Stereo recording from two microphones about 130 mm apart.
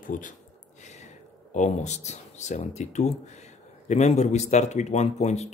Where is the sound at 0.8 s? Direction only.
65° left (ahead or behind).